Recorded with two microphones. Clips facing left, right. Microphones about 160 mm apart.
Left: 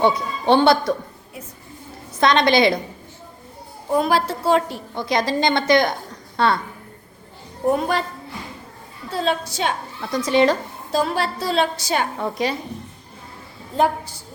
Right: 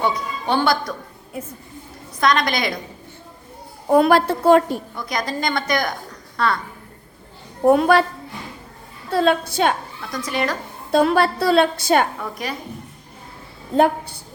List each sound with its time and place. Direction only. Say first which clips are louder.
0.0 s a woman's voice: left 4 dB; 25° left (ahead or behind)
2.2 s a woman's voice: left 4 dB; 25° left (ahead or behind)
3.8 s a woman's voice: right 5 dB; 65° right (ahead or behind)
4.9 s a woman's voice: left 9 dB; 25° left (ahead or behind)
7.7 s a woman's voice: right 6 dB; 70° right (ahead or behind)
9.1 s a woman's voice: right 5 dB; 55° right (ahead or behind)
10.1 s a woman's voice: left 7 dB; 25° left (ahead or behind)
10.9 s a woman's voice: right 5 dB; 60° right (ahead or behind)
12.2 s a woman's voice: left 5 dB; 25° left (ahead or behind)
13.7 s a woman's voice: right 3 dB; 60° right (ahead or behind)